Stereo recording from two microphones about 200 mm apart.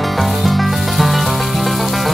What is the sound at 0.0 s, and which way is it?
Music, centre (ahead or behind).